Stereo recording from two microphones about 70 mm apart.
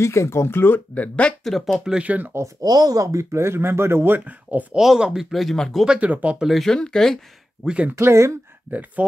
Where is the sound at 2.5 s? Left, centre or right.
Right.